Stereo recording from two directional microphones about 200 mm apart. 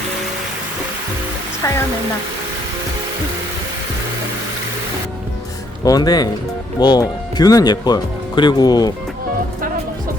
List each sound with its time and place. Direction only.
1.6 s speech: 15° left (ahead or behind)
5.8 s speech: 20° left (ahead or behind)